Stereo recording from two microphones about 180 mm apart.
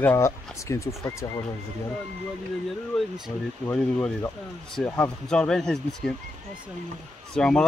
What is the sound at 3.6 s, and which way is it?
Speech, 10° left (ahead or behind).